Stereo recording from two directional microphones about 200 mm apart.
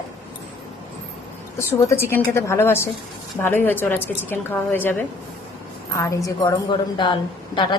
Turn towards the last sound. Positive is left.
turn(degrees=25)  # may be behind; listen again after turning